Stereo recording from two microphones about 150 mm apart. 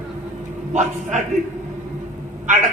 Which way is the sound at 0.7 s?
55° right (ahead or behind).